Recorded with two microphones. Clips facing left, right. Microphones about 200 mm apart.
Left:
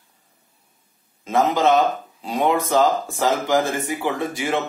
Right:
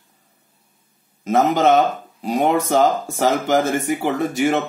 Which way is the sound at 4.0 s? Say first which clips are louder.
Right 4 dB; 50° right (ahead or behind).